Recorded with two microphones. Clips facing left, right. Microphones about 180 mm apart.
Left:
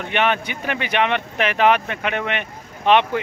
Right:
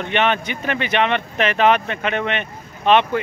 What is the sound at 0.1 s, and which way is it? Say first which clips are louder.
Speech: right 1 dB; 10° left (ahead or behind).